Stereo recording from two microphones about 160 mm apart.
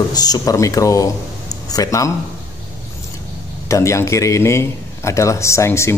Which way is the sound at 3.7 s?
20° left (ahead or behind).